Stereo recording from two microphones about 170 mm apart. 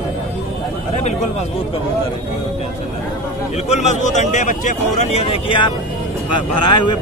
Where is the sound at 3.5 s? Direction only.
40° left (ahead or behind).